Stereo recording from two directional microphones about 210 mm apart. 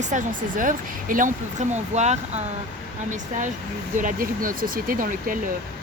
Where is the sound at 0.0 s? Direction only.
35° right (ahead or behind).